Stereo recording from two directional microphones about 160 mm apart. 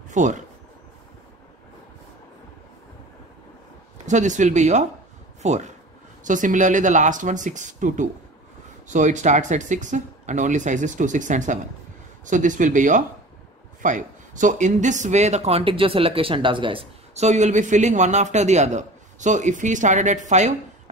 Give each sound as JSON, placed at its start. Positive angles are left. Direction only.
{"t": 0.1, "sound": "speech", "side_deg": -50}
{"t": 4.0, "sound": "speech", "side_deg": -50}